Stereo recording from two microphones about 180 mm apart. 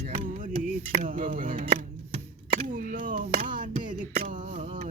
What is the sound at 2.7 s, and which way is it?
Music, 45° right (ahead or behind).